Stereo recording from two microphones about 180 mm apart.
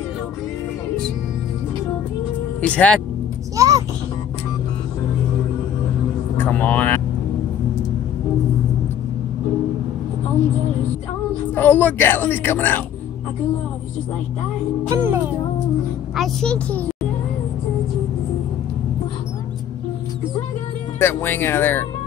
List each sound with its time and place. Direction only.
2.6 s speech: 5° left (ahead or behind)
3.5 s a sound: 20° right (ahead or behind)
6.3 s speech: 10° left (ahead or behind)
11.5 s speech: 10° left (ahead or behind)
14.9 s music: 15° right (ahead or behind)
16.2 s a woman's voice: 5° left (ahead or behind)
21.0 s speech: 10° left (ahead or behind)